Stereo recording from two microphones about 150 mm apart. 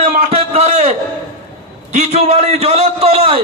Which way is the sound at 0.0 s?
45° right (ahead or behind).